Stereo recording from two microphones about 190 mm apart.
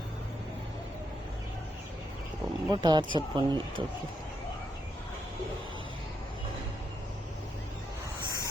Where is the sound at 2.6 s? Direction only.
20° right (ahead or behind).